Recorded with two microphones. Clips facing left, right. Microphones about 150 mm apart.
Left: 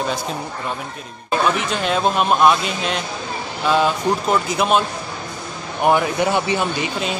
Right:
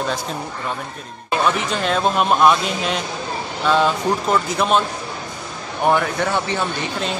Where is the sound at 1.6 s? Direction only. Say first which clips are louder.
Even; centre (ahead or behind).